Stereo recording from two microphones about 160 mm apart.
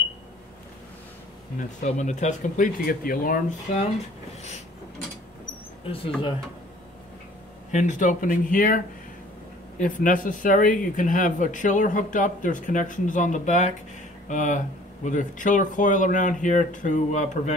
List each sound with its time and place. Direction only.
1.8 s speech: 50° left (ahead or behind)
7.7 s speech: 50° left (ahead or behind)